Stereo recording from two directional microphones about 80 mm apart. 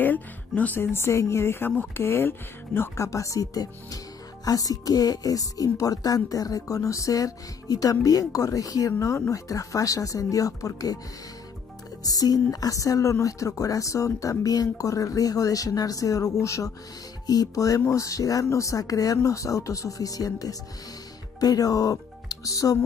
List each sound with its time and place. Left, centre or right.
0.0 s speech: left
3.1 s speech: left
12.0 s speech: left